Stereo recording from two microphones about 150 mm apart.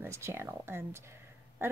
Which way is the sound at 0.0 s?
20° right (ahead or behind).